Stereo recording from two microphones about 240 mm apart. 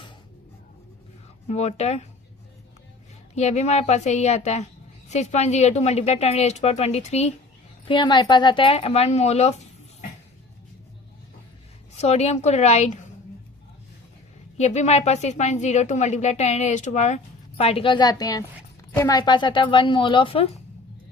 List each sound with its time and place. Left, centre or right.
1.5 s a woman's voice: left
3.3 s a woman's voice: left
11.9 s a woman's voice: left
14.6 s a woman's voice: left